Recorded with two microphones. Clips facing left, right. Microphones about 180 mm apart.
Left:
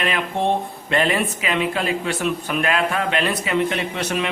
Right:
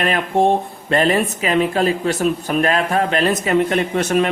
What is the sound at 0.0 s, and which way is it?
A man's voice, 45° right (ahead or behind).